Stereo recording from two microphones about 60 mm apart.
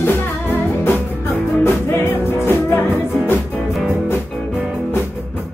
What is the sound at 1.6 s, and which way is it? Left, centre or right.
Music, left.